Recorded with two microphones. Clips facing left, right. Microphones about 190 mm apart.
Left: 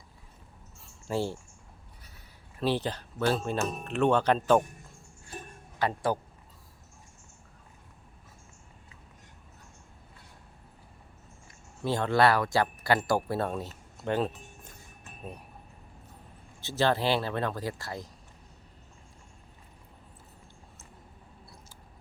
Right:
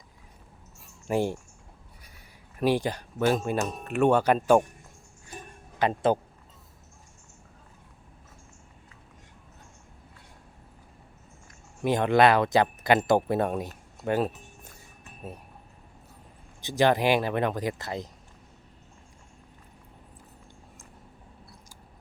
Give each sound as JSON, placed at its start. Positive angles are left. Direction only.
{"t": 1.0, "sound": "speech", "side_deg": -15}
{"t": 5.8, "sound": "speech", "side_deg": -20}
{"t": 11.8, "sound": "speech", "side_deg": -15}
{"t": 16.6, "sound": "speech", "side_deg": -15}